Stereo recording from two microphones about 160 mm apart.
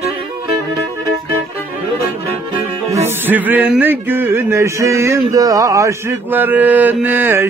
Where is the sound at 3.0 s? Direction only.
10° right (ahead or behind).